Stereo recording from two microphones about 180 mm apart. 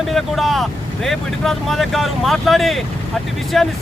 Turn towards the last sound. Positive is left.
turn(degrees=0)  # may be behind; listen again after turning